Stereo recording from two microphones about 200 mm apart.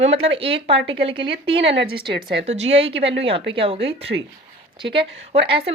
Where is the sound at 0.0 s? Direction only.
30° right (ahead or behind).